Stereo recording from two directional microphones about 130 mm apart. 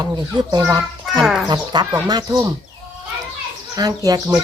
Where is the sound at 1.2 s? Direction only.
Centre (ahead or behind).